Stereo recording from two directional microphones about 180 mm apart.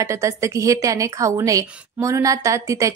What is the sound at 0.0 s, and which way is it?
A woman's voice, 15° right (ahead or behind).